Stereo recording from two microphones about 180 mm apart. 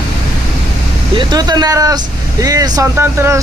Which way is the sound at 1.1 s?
20° right (ahead or behind).